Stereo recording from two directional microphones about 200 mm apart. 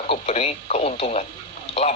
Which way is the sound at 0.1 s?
30° left (ahead or behind).